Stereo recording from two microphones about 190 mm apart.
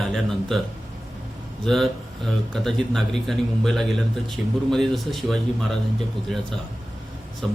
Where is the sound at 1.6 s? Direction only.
Centre (ahead or behind).